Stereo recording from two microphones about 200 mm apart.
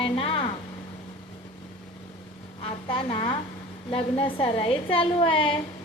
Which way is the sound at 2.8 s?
25° left (ahead or behind).